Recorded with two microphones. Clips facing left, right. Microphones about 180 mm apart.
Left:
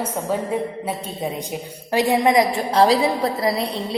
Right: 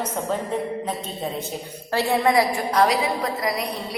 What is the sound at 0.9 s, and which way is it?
A woman's voice, 15° left (ahead or behind).